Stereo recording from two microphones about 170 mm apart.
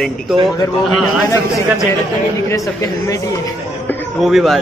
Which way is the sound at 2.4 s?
20° left (ahead or behind).